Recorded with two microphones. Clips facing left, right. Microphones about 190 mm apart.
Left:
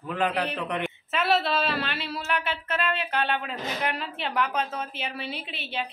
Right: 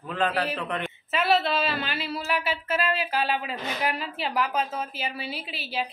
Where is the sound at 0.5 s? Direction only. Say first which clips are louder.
Left 1 dB; 15° left (ahead or behind).